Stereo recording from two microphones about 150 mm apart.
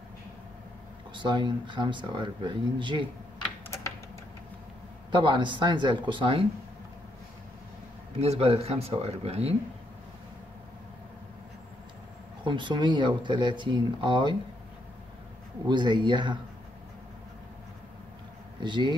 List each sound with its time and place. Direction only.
1.1 s speech: 30° right (ahead or behind)
5.1 s speech: 30° right (ahead or behind)
8.2 s speech: 40° right (ahead or behind)
12.4 s speech: 30° right (ahead or behind)
15.6 s speech: 30° right (ahead or behind)
18.6 s speech: 30° right (ahead or behind)